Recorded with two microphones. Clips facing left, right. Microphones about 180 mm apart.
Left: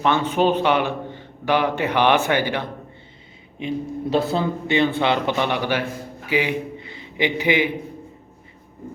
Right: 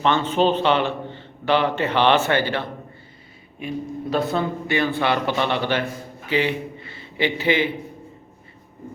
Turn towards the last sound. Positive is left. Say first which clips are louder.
# left 1 dB
turn(degrees=15)  # may be behind; listen again after turning